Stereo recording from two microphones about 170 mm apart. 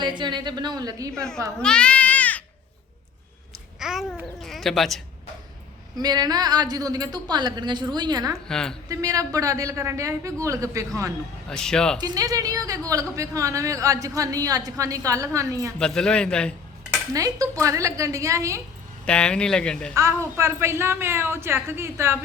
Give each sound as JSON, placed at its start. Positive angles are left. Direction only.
{"t": 0.2, "sound": "a woman's voice", "side_deg": -25}
{"t": 1.1, "sound": "speech", "side_deg": 5}
{"t": 3.8, "sound": "babbling", "side_deg": -5}
{"t": 6.0, "sound": "a woman's voice", "side_deg": -25}
{"t": 8.4, "sound": "speech", "side_deg": 5}
{"t": 8.9, "sound": "a woman's voice", "side_deg": -20}
{"t": 11.4, "sound": "speech", "side_deg": 5}
{"t": 11.9, "sound": "a woman's voice", "side_deg": -20}
{"t": 15.8, "sound": "speech", "side_deg": 5}
{"t": 17.1, "sound": "a woman's voice", "side_deg": -20}
{"t": 19.0, "sound": "speech", "side_deg": 5}
{"t": 20.0, "sound": "a woman's voice", "side_deg": -15}